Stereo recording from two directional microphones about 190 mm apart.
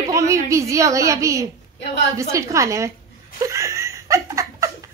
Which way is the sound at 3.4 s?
15° right (ahead or behind).